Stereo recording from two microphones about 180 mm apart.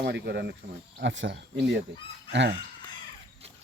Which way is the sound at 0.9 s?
90° right.